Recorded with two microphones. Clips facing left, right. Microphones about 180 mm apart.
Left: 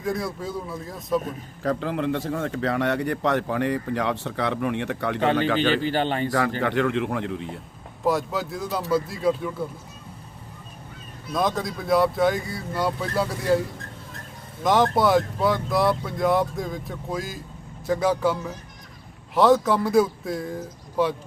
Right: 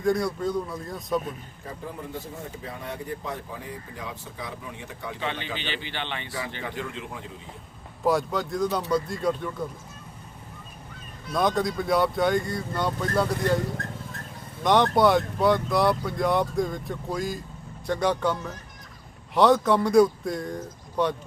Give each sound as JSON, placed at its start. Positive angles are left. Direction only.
{"t": 0.0, "sound": "speech", "side_deg": 0}
{"t": 1.6, "sound": "a man's voice", "side_deg": 85}
{"t": 5.2, "sound": "speech", "side_deg": 45}
{"t": 6.6, "sound": "a man's voice", "side_deg": 70}
{"t": 8.0, "sound": "speech", "side_deg": 0}
{"t": 11.3, "sound": "speech", "side_deg": 0}
{"t": 14.6, "sound": "a man's voice", "side_deg": 0}